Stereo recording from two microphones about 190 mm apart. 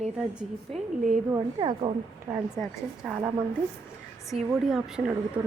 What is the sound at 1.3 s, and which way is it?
Speech, 25° right (ahead or behind).